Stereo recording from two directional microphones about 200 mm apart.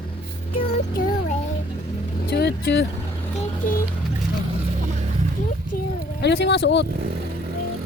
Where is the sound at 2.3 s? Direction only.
55° left (ahead or behind).